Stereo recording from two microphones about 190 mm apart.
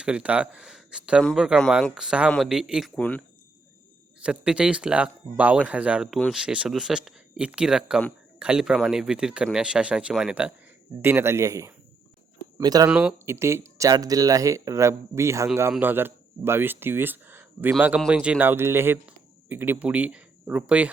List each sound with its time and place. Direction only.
0.0 s speech: 5° right (ahead or behind)
12.9 s speech: 5° right (ahead or behind)